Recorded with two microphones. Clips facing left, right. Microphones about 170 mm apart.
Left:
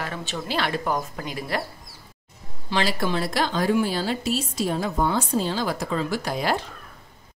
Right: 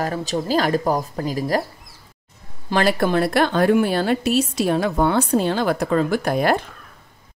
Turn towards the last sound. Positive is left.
turn(degrees=-55)  # may be behind; listen again after turning